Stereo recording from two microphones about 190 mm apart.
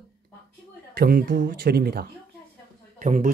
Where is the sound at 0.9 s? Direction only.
50° right (ahead or behind).